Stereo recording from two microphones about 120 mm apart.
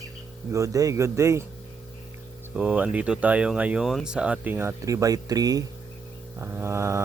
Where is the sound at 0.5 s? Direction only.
25° right (ahead or behind).